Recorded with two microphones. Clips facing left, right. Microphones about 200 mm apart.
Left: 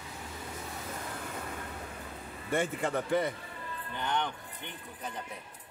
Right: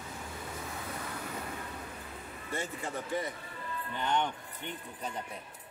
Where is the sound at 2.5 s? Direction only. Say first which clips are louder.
Left 7 dB; 60° left (ahead or behind).